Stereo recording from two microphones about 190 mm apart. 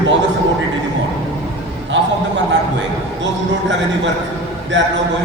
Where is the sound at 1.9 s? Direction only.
70° right (ahead or behind).